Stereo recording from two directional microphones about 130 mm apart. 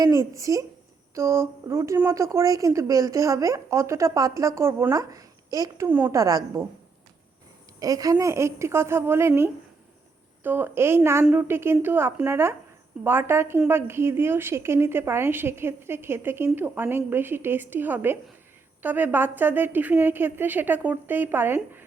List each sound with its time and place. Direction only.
0.0 s a woman's voice: 25° right (ahead or behind)
7.8 s a woman's voice: 30° right (ahead or behind)